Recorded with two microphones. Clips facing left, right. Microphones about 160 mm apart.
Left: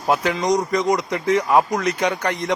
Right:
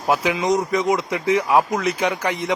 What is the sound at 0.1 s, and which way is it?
Speech, 5° right (ahead or behind).